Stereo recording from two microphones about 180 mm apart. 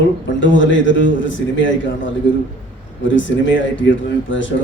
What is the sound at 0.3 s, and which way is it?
Speech, 90° left.